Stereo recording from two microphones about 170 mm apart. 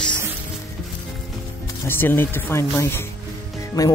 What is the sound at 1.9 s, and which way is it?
Speech, 10° left (ahead or behind).